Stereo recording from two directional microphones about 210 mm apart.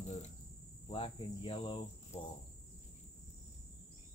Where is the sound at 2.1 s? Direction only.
30° left (ahead or behind).